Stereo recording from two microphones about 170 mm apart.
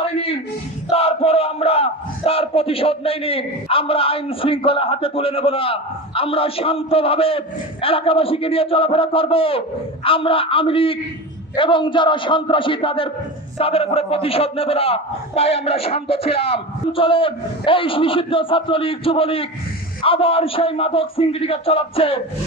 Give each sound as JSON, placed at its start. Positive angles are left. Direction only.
{"t": 0.0, "sound": "a sound", "side_deg": 35}
{"t": 0.8, "sound": "battle cry", "side_deg": 35}
{"t": 11.5, "sound": "a man's voice", "side_deg": 30}
{"t": 13.6, "sound": "battle cry", "side_deg": 35}